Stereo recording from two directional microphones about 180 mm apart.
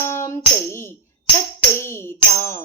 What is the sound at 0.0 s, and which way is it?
Tambourine, 15° left (ahead or behind).